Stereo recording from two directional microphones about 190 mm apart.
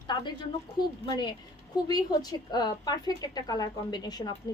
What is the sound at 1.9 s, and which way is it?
A woman's voice, 20° left (ahead or behind).